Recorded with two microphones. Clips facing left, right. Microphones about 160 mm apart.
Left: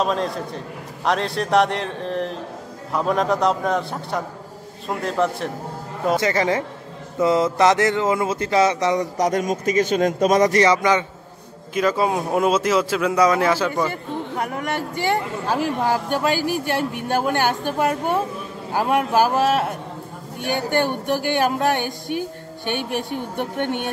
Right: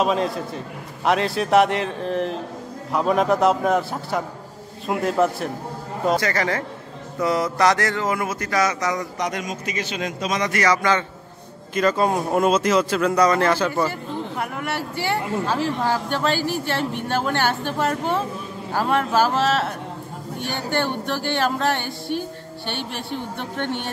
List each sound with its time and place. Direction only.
0.0 s speech: centre (ahead or behind)
6.1 s speech: 20° left (ahead or behind)
9.3 s a man's voice: 45° left (ahead or behind)
10.6 s speech: 20° left (ahead or behind)
11.7 s speech: 5° left (ahead or behind)
15.4 s speech: 10° left (ahead or behind)